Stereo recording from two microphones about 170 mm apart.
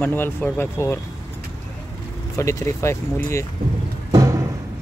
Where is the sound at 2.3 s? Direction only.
15° left (ahead or behind).